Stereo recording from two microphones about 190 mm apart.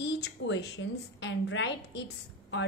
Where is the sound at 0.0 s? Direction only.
65° left (ahead or behind).